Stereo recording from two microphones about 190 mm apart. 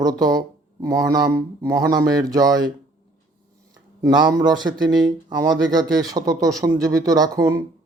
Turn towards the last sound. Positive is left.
turn(degrees=-20)  # may be behind; listen again after turning